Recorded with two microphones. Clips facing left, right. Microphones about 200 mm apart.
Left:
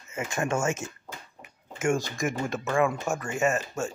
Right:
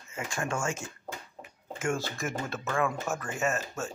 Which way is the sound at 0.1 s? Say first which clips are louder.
Left 5 dB; 20° left (ahead or behind).